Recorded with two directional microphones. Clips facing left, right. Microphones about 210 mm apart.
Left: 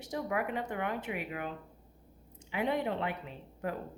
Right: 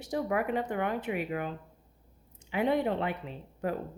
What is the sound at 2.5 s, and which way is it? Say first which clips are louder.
Speech: right 4 dB; 30° right (ahead or behind).